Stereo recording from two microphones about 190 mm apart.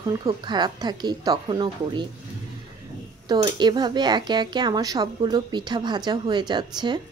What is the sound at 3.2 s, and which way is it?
Speech, 25° right (ahead or behind).